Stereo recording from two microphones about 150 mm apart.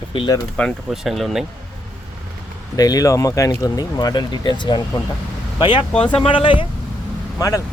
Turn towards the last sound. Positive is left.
turn(degrees=20)  # may be behind; listen again after turning